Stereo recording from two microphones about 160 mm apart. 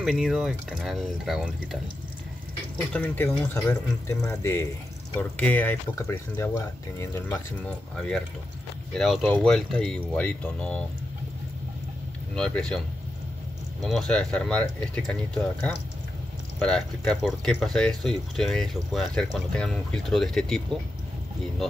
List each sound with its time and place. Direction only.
0.0 s speech: centre (ahead or behind)
2.9 s speech: 10° left (ahead or behind)
7.9 s speech: 5° left (ahead or behind)
12.4 s speech: 5° left (ahead or behind)